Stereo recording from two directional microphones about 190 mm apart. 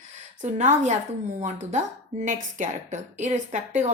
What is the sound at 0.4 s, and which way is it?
A woman's voice, 35° right (ahead or behind).